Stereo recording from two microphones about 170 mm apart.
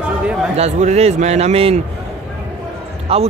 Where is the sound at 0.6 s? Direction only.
40° right (ahead or behind).